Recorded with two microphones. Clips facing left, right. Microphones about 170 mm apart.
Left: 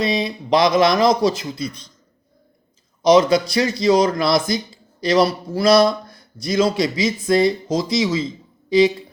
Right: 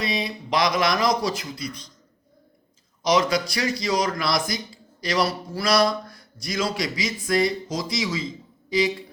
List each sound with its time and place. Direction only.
0.0 s speech: 25° left (ahead or behind)
3.0 s speech: 25° left (ahead or behind)